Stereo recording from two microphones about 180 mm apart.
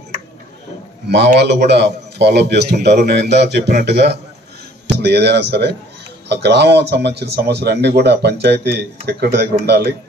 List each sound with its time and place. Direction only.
1.0 s a man's voice: 70° right (ahead or behind)